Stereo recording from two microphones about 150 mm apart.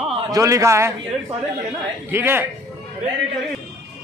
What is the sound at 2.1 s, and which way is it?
Speech, 15° right (ahead or behind).